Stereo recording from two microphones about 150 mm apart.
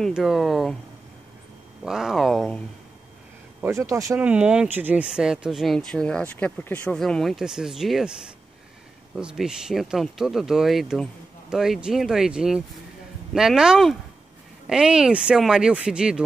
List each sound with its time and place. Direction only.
0.0 s speech: centre (ahead or behind)
1.9 s speech: 5° right (ahead or behind)
3.6 s speech: 20° right (ahead or behind)
4.2 s speech: 10° right (ahead or behind)
9.1 s speech: 5° right (ahead or behind)